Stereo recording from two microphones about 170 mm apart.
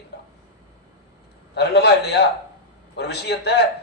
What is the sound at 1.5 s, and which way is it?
A man's voice, 75° left (ahead or behind).